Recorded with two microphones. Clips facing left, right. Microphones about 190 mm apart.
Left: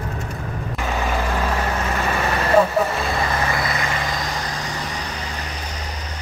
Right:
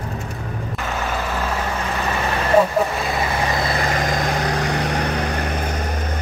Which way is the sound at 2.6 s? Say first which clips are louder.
Even; centre (ahead or behind).